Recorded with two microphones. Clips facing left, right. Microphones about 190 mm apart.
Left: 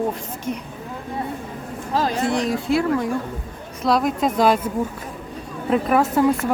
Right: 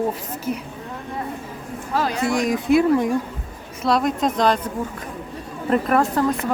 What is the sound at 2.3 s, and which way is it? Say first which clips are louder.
Speech: right 7 dB; 15° right (ahead or behind).